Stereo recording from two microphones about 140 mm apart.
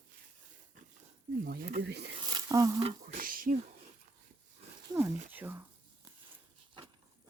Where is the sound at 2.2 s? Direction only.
30° right (ahead or behind).